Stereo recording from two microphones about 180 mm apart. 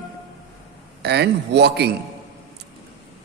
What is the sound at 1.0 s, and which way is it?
Speech, 65° right (ahead or behind).